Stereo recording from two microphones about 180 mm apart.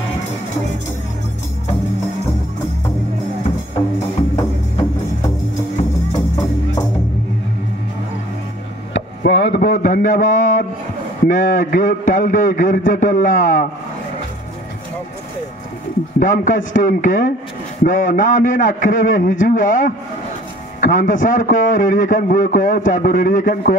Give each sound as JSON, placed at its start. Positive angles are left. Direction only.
{"t": 8.9, "sound": "a sound", "side_deg": 75}
{"t": 9.6, "sound": "a man's voice", "side_deg": 50}
{"t": 16.2, "sound": "a man's voice", "side_deg": 45}